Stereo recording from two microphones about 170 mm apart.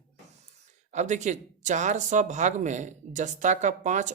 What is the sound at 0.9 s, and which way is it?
Speech, 45° right (ahead or behind).